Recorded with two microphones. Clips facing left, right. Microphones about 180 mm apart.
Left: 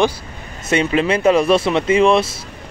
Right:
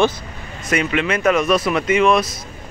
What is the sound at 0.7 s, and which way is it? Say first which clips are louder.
Speech: left 3 dB; 30° left (ahead or behind).